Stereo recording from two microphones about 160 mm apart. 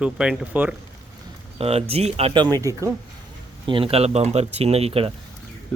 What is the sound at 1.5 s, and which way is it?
Speech, 40° right (ahead or behind).